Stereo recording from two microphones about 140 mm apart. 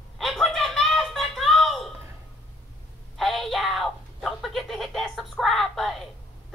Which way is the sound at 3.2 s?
Centre (ahead or behind).